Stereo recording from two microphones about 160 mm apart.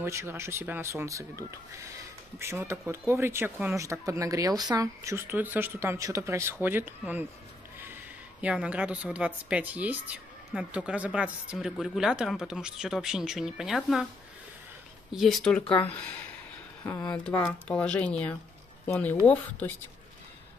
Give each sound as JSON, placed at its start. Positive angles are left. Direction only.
{"t": 0.0, "sound": "speech", "side_deg": -15}
{"t": 2.3, "sound": "speech", "side_deg": -15}
{"t": 15.1, "sound": "speech", "side_deg": 0}